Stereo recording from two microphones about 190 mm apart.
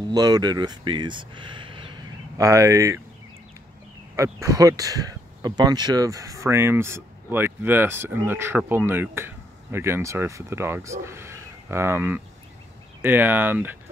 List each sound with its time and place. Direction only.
0.1 s speech: 20° right (ahead or behind)
4.2 s speech: 15° right (ahead or behind)